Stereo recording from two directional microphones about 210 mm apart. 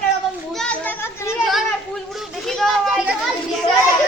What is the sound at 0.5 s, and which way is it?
Children playing, 5° left (ahead or behind).